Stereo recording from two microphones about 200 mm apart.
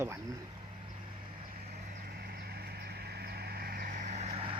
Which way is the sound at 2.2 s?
50° right (ahead or behind).